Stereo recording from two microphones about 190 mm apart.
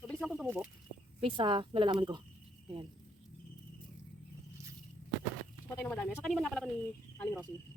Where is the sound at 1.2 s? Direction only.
25° right (ahead or behind).